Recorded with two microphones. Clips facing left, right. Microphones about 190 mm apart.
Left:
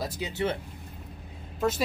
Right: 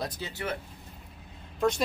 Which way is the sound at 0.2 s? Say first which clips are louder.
Left 5 dB; 25° left (ahead or behind).